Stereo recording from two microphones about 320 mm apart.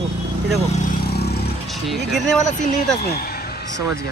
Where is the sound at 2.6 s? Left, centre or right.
Left.